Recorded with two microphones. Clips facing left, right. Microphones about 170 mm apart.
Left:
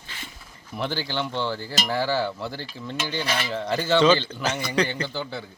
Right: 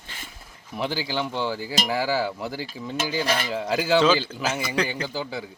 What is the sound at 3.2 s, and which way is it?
Speech, 45° right (ahead or behind).